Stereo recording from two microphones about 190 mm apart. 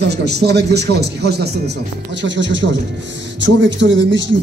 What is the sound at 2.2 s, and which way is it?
A man's voice, 70° right (ahead or behind).